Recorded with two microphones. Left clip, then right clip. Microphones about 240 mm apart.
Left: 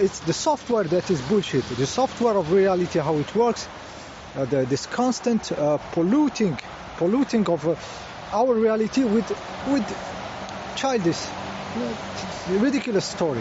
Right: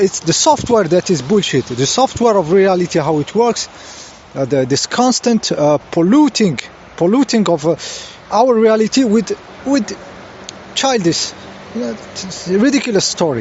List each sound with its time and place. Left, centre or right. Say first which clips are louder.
0.0 s speech: right 10 dB; right
10.8 s speech: right 9 dB; right